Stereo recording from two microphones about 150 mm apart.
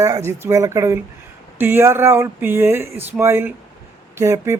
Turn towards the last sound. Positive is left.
turn(degrees=-20)  # may be behind; listen again after turning